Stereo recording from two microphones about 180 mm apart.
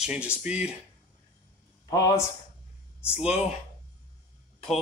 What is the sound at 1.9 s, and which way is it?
Speech, 20° left (ahead or behind).